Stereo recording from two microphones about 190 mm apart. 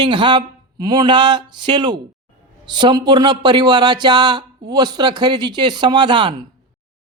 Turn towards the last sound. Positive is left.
turn(degrees=-25)  # may be behind; listen again after turning